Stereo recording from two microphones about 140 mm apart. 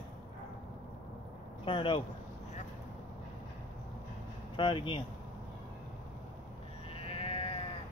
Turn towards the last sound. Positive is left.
turn(degrees=45)  # may be behind; listen again after turning